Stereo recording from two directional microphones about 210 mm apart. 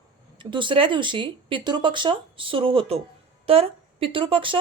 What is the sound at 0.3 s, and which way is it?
A woman's voice, 20° right (ahead or behind).